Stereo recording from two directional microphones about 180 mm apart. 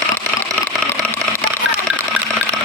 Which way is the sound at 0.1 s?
5° left (ahead or behind).